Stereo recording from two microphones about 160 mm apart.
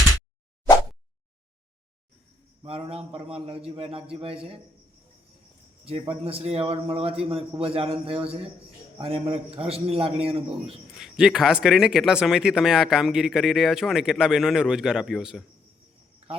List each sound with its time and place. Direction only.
2.6 s a man's voice: 35° right (ahead or behind)
6.2 s a man's voice: 40° right (ahead or behind)
10.9 s speech: centre (ahead or behind)